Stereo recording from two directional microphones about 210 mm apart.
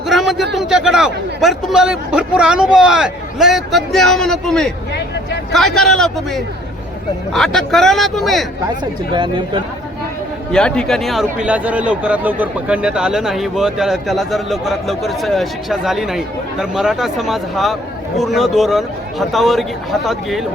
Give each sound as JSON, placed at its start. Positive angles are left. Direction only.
{"t": 0.1, "sound": "a sound", "side_deg": 0}
{"t": 0.5, "sound": "a man's voice", "side_deg": 0}
{"t": 8.8, "sound": "speech", "side_deg": -20}
{"t": 10.5, "sound": "a man's voice", "side_deg": 5}